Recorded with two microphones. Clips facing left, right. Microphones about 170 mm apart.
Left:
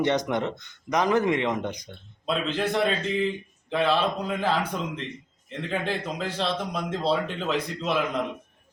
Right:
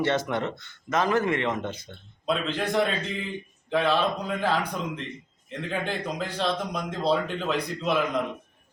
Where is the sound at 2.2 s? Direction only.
Centre (ahead or behind).